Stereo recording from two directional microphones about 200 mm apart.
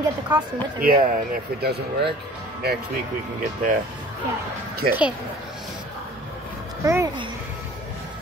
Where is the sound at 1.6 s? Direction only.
55° right (ahead or behind).